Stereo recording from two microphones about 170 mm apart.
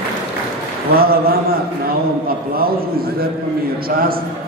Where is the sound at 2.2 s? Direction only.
60° right (ahead or behind).